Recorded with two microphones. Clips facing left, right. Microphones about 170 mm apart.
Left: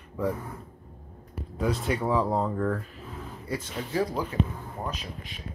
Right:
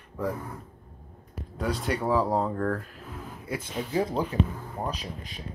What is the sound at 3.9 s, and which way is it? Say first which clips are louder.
Speech: right 1 dB; 20° right (ahead or behind).